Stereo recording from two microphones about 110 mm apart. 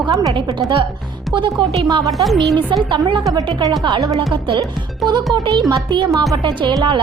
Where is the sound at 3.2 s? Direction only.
35° right (ahead or behind).